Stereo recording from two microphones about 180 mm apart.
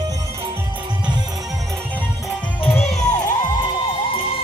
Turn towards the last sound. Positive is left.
turn(degrees=30)  # may be behind; listen again after turning